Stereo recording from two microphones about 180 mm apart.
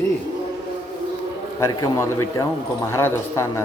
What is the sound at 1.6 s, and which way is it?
A man's voice, 15° left (ahead or behind).